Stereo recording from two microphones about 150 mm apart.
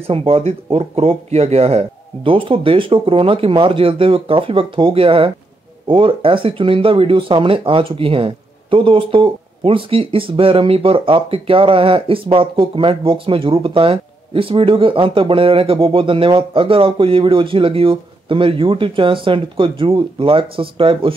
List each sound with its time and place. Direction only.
0.0 s speech: 40° right (ahead or behind)